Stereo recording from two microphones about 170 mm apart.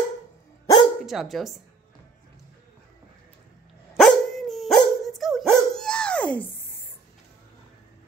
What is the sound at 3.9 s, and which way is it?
Dog, centre (ahead or behind).